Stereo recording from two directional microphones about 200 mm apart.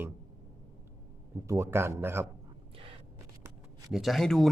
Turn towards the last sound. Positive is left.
turn(degrees=0)  # may be behind; listen again after turning